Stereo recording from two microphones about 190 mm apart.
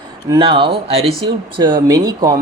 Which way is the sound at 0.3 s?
25° right (ahead or behind).